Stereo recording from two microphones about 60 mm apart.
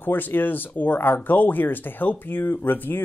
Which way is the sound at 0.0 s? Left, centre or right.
Left.